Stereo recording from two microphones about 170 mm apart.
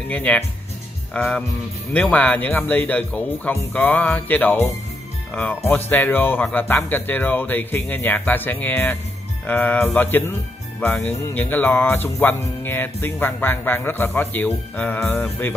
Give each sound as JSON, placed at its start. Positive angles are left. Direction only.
{"t": 0.1, "sound": "speech", "side_deg": 10}